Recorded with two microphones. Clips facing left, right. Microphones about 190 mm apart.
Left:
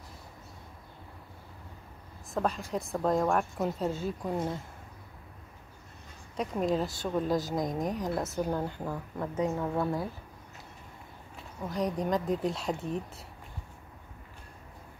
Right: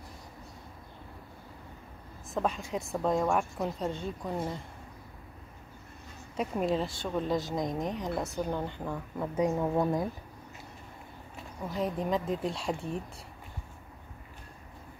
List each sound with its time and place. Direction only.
2.3 s a woman's voice: centre (ahead or behind)
6.3 s a woman's voice: 5° right (ahead or behind)
9.4 s speech: 15° right (ahead or behind)
11.7 s a woman's voice: centre (ahead or behind)